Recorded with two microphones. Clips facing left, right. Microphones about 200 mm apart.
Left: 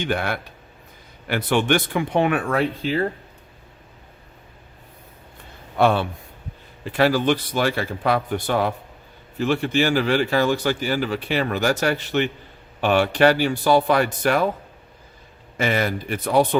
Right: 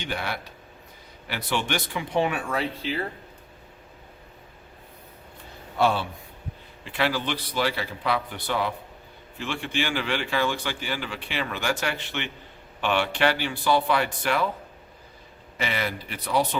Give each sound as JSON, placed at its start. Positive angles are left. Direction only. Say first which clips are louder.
{"t": 0.0, "sound": "speech", "louder": "left 7 dB", "side_deg": 50}
{"t": 5.7, "sound": "a man's voice", "louder": "left 5 dB", "side_deg": 55}
{"t": 6.8, "sound": "a man's voice", "louder": "left 8 dB", "side_deg": 45}
{"t": 15.5, "sound": "speech", "louder": "left 7 dB", "side_deg": 45}